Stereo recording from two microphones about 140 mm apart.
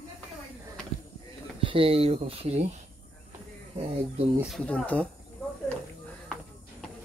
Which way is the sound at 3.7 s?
45° right (ahead or behind).